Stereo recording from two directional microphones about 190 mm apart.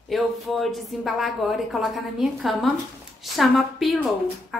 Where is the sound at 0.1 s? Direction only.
Centre (ahead or behind).